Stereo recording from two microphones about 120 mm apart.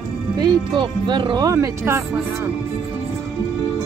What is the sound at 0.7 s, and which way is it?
Speech, 40° right (ahead or behind).